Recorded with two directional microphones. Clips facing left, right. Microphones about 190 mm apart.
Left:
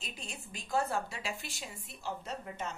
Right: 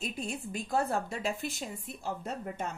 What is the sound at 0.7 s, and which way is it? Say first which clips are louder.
A woman's voice: right 2 dB; 50° right (ahead or behind).